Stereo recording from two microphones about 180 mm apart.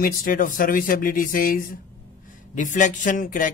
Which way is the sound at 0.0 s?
50° left (ahead or behind).